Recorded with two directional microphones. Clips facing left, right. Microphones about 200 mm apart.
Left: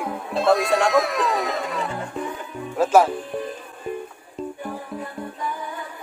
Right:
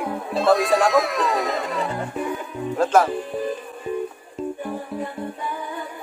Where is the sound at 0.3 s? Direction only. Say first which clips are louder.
Right 1 dB; centre (ahead or behind).